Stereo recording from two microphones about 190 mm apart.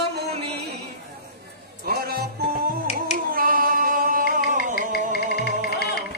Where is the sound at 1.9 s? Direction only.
55° right (ahead or behind).